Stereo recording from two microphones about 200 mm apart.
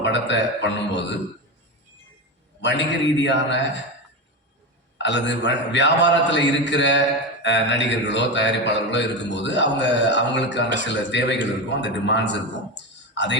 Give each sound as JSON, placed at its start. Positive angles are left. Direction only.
{"t": 0.0, "sound": "speech", "side_deg": 65}
{"t": 2.6, "sound": "speech", "side_deg": 60}
{"t": 5.0, "sound": "speech", "side_deg": 65}